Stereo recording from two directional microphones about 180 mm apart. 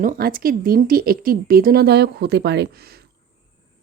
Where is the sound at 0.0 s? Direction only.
50° right (ahead or behind).